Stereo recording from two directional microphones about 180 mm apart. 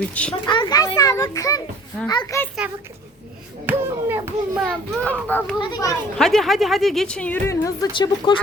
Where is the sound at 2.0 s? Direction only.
25° left (ahead or behind).